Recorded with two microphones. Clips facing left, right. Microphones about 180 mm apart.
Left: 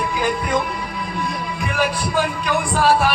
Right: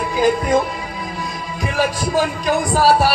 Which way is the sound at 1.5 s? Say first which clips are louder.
Right 3 dB; 40° right (ahead or behind).